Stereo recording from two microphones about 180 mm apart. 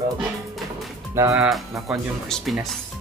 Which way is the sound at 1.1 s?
15° right (ahead or behind).